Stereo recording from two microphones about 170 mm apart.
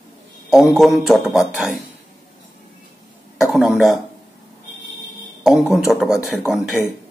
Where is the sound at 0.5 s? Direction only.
Centre (ahead or behind).